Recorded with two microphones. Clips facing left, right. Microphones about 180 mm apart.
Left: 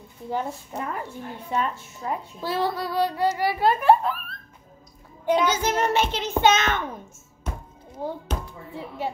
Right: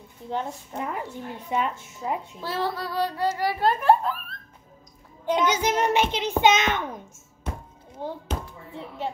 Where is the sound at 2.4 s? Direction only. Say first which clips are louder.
Left 4 dB; 15° left (ahead or behind).